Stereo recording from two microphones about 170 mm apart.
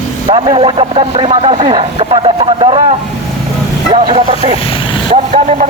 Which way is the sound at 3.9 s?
35° right (ahead or behind).